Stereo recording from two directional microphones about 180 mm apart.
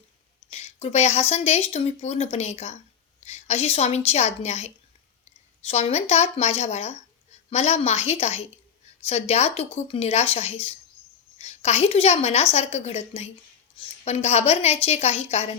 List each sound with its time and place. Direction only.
0.5 s a woman's voice: 35° left (ahead or behind)